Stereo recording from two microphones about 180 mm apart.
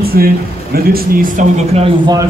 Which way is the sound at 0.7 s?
55° right (ahead or behind).